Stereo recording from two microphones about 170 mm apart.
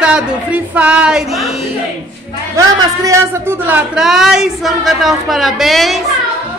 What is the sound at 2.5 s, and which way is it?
A man's voice, 15° right (ahead or behind).